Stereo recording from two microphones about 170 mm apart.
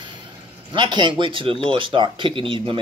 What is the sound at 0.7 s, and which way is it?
Speech, 25° right (ahead or behind).